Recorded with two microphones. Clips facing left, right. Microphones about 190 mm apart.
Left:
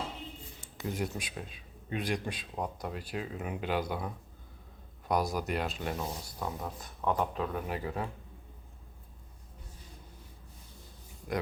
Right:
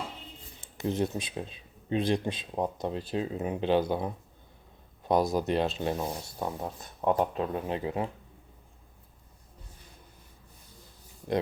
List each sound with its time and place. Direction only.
0.6 s speech: 25° right (ahead or behind)